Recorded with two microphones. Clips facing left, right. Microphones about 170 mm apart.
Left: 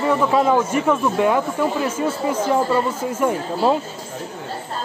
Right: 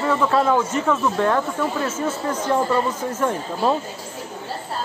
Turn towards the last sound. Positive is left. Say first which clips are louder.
# left 3 dB
turn(degrees=10)  # may be behind; listen again after turning